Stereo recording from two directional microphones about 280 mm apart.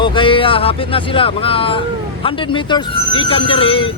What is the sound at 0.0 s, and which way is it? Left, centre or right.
Speech, centre.